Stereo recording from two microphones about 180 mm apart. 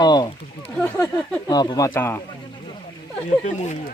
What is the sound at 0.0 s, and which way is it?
Speech, 25° left (ahead or behind).